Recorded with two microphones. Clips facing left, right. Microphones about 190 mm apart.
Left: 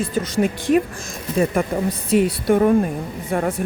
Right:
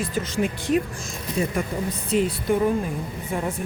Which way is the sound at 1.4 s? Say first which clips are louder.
Left 6 dB; 55° left (ahead or behind).